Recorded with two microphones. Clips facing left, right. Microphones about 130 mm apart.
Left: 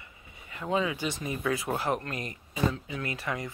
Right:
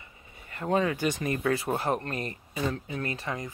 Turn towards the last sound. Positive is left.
turn(degrees=-25)  # may be behind; listen again after turning